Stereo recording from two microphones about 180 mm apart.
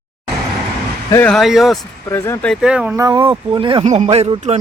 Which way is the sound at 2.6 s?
5° right (ahead or behind).